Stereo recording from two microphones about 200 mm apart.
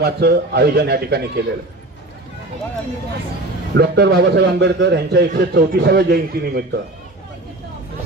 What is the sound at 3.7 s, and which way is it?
A man's voice, 55° right (ahead or behind).